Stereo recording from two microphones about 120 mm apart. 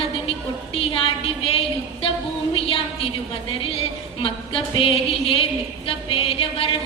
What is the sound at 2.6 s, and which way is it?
A woman's voice, 50° left (ahead or behind).